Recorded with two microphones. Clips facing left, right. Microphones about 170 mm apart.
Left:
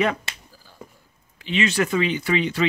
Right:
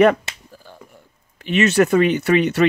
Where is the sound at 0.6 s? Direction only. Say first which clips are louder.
Left 1 dB; 65° right (ahead or behind).